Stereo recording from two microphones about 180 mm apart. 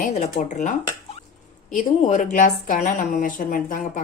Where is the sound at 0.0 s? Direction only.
40° left (ahead or behind).